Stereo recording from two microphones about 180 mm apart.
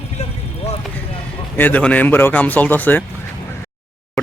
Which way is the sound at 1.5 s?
10° left (ahead or behind).